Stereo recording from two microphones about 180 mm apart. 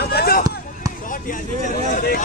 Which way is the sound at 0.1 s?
55° left (ahead or behind).